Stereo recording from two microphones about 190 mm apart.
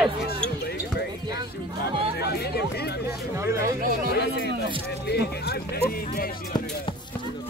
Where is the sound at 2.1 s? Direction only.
55° left (ahead or behind).